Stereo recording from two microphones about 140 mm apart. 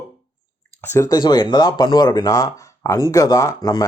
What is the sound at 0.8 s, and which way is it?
Speech, 15° left (ahead or behind).